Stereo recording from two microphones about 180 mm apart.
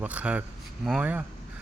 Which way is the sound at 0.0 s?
10° right (ahead or behind).